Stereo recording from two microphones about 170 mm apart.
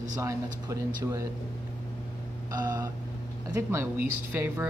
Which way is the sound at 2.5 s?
20° right (ahead or behind).